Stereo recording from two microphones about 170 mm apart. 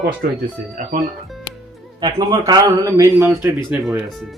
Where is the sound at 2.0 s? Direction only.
25° right (ahead or behind).